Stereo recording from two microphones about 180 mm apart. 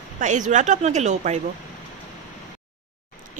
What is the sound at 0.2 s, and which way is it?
A woman's voice, 45° right (ahead or behind).